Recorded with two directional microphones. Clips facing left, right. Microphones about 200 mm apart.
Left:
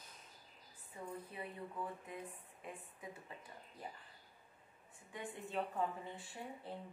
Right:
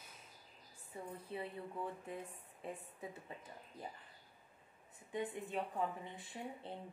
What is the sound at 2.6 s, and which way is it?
Speech, 30° right (ahead or behind).